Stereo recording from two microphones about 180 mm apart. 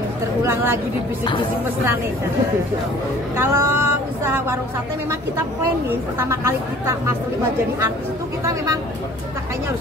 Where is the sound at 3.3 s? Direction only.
15° right (ahead or behind).